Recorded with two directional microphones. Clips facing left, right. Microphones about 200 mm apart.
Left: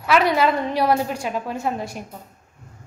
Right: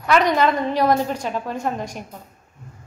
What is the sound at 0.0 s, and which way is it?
A woman's voice, 5° left (ahead or behind).